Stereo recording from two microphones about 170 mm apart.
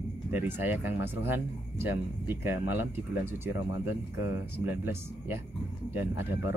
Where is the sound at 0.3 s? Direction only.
10° right (ahead or behind).